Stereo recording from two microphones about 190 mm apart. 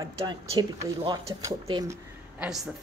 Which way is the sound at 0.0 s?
20° right (ahead or behind).